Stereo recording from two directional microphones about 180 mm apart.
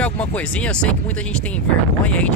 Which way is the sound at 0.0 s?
10° left (ahead or behind).